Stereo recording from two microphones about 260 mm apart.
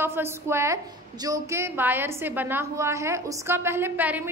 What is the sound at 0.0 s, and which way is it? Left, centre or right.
A woman's voice, centre.